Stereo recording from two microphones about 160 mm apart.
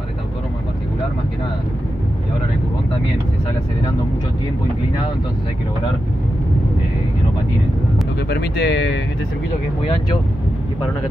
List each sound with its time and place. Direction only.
8.3 s speech: 90° left